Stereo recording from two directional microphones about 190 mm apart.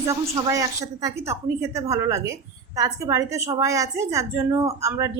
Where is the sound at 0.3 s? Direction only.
20° right (ahead or behind).